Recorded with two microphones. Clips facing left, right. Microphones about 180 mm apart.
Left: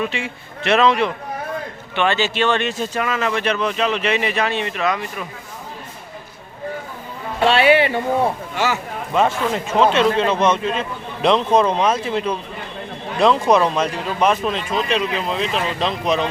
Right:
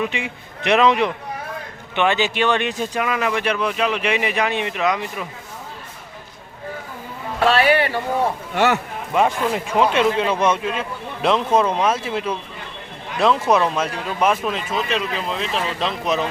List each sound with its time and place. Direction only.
0.0 s speech: 15° right (ahead or behind)
7.4 s speech: 30° left (ahead or behind)
8.5 s speech: 60° right (ahead or behind)
9.1 s speech: 10° right (ahead or behind)